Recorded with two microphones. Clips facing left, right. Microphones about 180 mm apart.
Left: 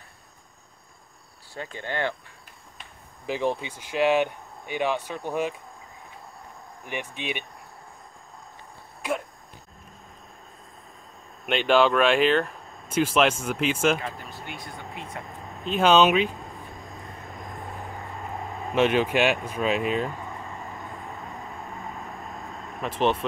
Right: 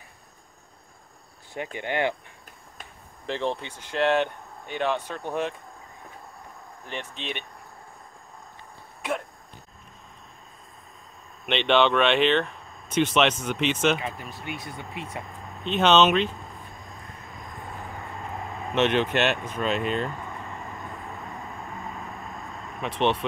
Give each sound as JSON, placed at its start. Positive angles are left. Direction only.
{"t": 1.5, "sound": "speech", "side_deg": -15}
{"t": 3.3, "sound": "speech", "side_deg": 10}
{"t": 6.9, "sound": "speech", "side_deg": 10}
{"t": 11.4, "sound": "speech", "side_deg": 5}
{"t": 15.6, "sound": "speech", "side_deg": 5}
{"t": 18.8, "sound": "speech", "side_deg": 5}
{"t": 22.8, "sound": "speech", "side_deg": 0}